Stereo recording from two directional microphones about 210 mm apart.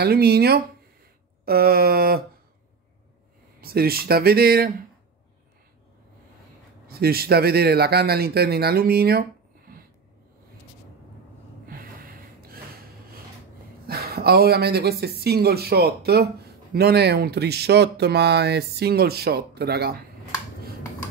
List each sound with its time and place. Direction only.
0.0 s speech: 50° right (ahead or behind)
3.6 s speech: 45° right (ahead or behind)
6.9 s speech: 45° right (ahead or behind)
11.6 s gasp: 45° right (ahead or behind)
13.8 s speech: 45° right (ahead or behind)